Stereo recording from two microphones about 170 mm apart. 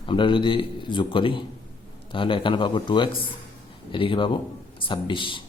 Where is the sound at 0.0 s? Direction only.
30° left (ahead or behind).